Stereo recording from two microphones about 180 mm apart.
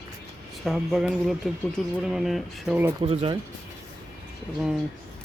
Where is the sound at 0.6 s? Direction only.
Centre (ahead or behind).